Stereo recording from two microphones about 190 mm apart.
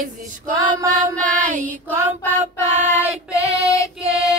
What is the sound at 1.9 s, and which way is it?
Child singing, 10° left (ahead or behind).